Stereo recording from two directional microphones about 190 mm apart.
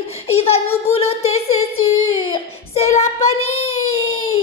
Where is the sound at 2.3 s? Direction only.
35° left (ahead or behind).